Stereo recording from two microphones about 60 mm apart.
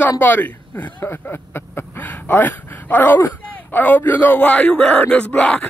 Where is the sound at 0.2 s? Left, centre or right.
Left.